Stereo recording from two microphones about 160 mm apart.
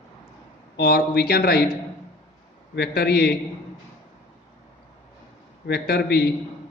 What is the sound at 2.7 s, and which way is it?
Speech, 90° left.